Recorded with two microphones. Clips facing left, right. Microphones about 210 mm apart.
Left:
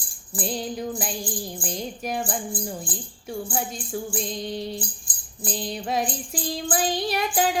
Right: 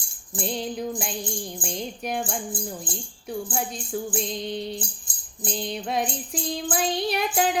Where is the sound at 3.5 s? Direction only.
Centre (ahead or behind).